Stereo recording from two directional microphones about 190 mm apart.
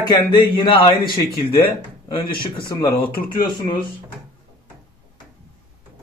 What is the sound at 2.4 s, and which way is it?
Speech, 20° left (ahead or behind).